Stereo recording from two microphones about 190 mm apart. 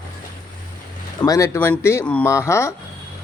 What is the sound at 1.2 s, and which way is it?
Speech, 15° left (ahead or behind).